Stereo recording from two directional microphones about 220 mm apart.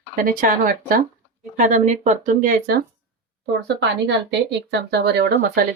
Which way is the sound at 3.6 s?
50° right (ahead or behind).